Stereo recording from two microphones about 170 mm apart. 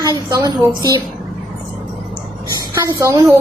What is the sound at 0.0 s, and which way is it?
Speech, 20° right (ahead or behind).